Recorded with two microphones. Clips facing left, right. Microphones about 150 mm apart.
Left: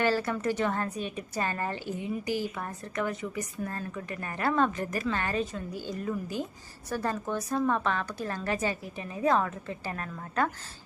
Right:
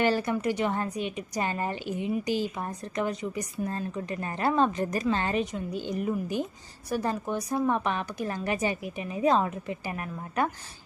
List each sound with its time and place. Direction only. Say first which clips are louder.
0.0 s a woman's voice: right 2 dB; 15° right (ahead or behind)